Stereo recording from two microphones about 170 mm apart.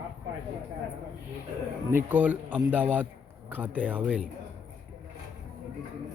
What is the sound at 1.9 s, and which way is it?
Speech, 10° right (ahead or behind).